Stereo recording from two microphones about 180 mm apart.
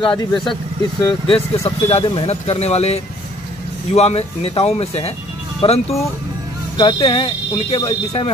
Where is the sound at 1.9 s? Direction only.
30° left (ahead or behind).